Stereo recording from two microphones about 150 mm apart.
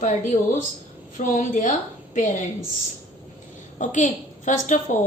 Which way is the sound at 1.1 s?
60° left (ahead or behind).